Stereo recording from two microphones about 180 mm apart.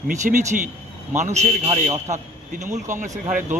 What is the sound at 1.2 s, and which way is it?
A man's voice, 40° right (ahead or behind).